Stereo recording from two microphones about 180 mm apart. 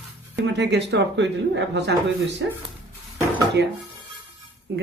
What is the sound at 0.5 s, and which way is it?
Speech, 70° right (ahead or behind).